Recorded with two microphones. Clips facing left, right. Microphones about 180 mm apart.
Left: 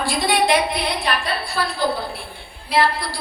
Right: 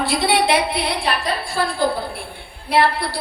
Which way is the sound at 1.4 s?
50° right (ahead or behind).